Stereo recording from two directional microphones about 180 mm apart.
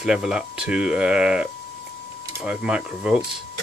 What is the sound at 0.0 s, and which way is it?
Speech, 5° right (ahead or behind).